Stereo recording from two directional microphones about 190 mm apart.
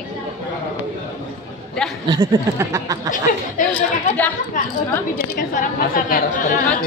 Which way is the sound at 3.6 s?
45° left (ahead or behind).